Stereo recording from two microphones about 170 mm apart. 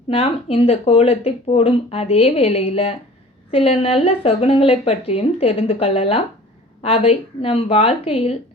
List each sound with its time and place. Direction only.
0.1 s speech: 35° left (ahead or behind)